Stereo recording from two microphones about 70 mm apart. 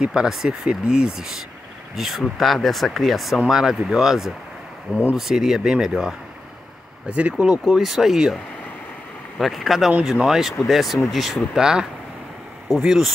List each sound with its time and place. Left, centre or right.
0.0 s speech: centre
7.1 s speech: centre
7.6 s speech: centre
9.4 s speech: centre